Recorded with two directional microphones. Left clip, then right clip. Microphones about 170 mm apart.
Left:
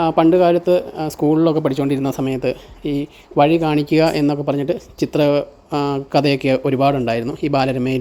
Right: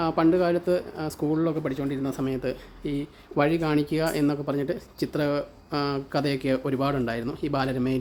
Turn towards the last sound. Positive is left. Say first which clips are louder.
# left 9 dB
turn(degrees=30)  # may be behind; listen again after turning